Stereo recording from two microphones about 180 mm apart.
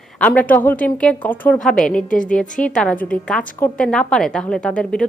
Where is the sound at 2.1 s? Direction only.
45° left (ahead or behind).